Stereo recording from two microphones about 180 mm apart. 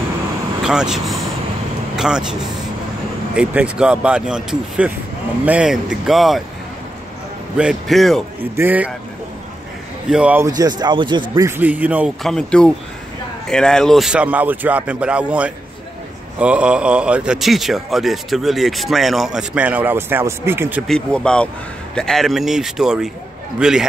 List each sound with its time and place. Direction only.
0.7 s speech: 5° right (ahead or behind)
7.5 s speech: centre (ahead or behind)
10.0 s speech: 5° right (ahead or behind)
10.4 s speech: 20° right (ahead or behind)
12.2 s speech: 5° left (ahead or behind); by 20.8 s 10° right (ahead or behind)
20.8 s speech: 5° left (ahead or behind)